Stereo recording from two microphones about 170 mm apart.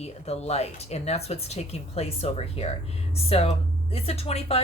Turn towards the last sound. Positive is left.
turn(degrees=35)  # may be behind; listen again after turning